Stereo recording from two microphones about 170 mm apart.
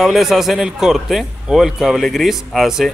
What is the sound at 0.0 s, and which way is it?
A man's voice, centre (ahead or behind).